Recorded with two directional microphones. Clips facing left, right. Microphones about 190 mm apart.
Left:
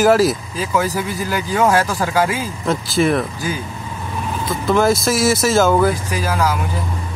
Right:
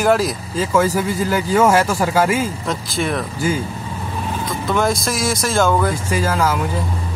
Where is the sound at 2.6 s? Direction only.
Centre (ahead or behind).